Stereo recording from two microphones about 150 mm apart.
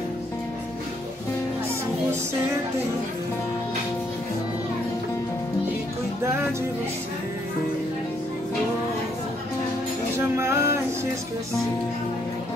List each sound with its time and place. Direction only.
10.1 s music: 15° right (ahead or behind)